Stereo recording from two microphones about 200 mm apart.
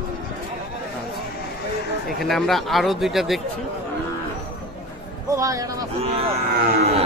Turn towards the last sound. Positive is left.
turn(degrees=-30)  # may be behind; listen again after turning